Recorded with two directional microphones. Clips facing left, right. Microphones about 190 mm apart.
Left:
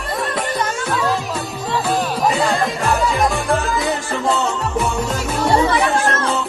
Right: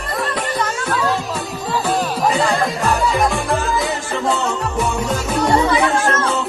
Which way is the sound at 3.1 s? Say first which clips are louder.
Even; centre (ahead or behind).